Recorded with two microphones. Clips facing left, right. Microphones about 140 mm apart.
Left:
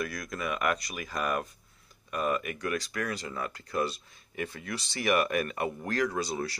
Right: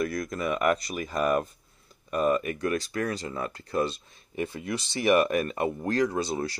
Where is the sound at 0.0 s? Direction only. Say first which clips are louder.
Right 5 dB; 25° right (ahead or behind).